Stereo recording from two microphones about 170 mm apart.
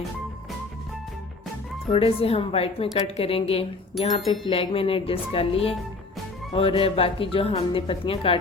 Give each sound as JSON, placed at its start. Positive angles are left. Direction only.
{"t": 1.9, "sound": "speech", "side_deg": 35}
{"t": 3.9, "sound": "chime", "side_deg": 0}
{"t": 4.4, "sound": "speech", "side_deg": 35}